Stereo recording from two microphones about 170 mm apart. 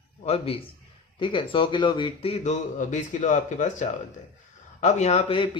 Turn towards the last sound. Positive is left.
turn(degrees=30)  # may be behind; listen again after turning